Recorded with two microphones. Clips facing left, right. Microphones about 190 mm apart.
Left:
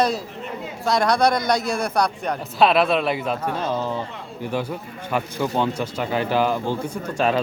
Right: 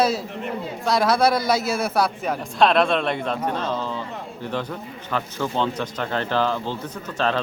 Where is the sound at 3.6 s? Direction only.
15° left (ahead or behind).